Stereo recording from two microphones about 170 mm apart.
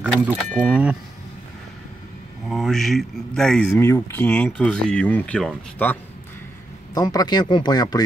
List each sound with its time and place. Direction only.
0.0 s speech: 10° right (ahead or behind)
2.4 s speech: centre (ahead or behind)
3.7 s speech: 15° left (ahead or behind)
6.9 s speech: 20° left (ahead or behind)